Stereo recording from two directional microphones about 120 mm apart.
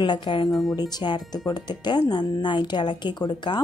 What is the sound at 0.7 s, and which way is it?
Speech, 35° left (ahead or behind).